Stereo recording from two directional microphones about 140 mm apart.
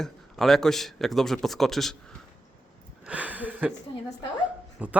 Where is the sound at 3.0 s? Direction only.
10° right (ahead or behind).